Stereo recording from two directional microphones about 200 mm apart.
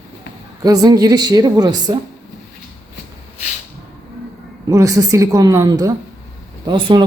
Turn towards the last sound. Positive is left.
turn(degrees=-25)  # may be behind; listen again after turning